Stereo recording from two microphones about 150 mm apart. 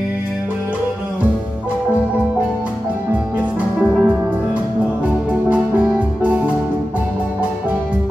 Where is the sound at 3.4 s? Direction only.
10° right (ahead or behind).